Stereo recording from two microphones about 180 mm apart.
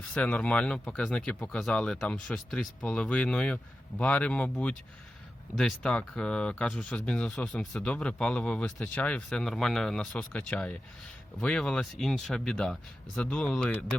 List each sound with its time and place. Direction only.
0.1 s speech: 5° left (ahead or behind)